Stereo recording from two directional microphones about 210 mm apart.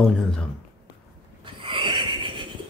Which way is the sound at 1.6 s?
25° right (ahead or behind).